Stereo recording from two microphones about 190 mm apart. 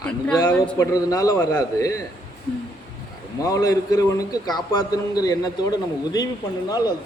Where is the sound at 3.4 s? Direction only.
20° left (ahead or behind).